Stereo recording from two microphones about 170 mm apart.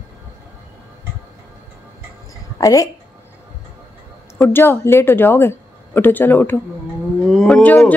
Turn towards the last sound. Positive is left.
turn(degrees=5)  # may be behind; listen again after turning